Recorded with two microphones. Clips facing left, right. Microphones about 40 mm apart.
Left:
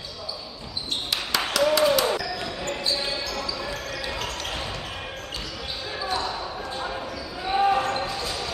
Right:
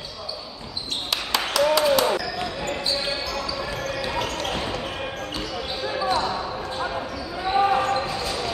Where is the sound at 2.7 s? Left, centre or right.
Centre.